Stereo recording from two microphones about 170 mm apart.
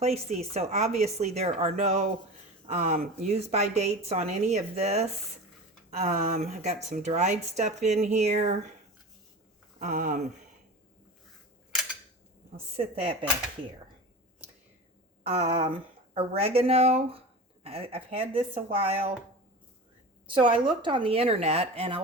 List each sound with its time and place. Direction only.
0.0 s speech: 40° right (ahead or behind)
9.8 s speech: 50° right (ahead or behind)
12.7 s speech: 35° right (ahead or behind)
15.3 s speech: 35° right (ahead or behind)
20.2 s speech: 30° right (ahead or behind)